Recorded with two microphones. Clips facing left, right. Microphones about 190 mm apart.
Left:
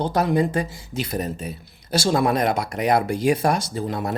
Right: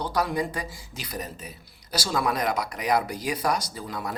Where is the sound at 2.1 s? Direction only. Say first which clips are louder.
Left 5 dB; 50° left (ahead or behind).